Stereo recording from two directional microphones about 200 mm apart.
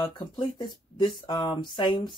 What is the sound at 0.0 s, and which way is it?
Speech, 20° left (ahead or behind).